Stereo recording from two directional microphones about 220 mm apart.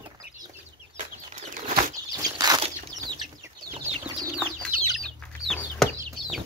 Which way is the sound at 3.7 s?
30° right (ahead or behind).